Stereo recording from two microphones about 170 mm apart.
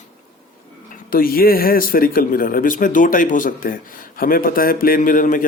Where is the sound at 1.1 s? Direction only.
60° left (ahead or behind).